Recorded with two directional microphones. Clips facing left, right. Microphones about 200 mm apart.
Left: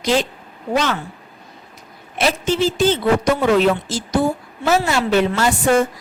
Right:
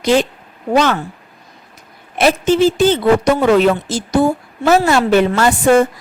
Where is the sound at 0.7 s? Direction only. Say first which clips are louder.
Right 5 dB; 55° right (ahead or behind).